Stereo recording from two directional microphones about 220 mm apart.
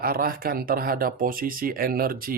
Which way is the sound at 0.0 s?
40° right (ahead or behind).